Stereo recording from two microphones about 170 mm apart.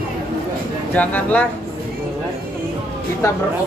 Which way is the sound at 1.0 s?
10° left (ahead or behind).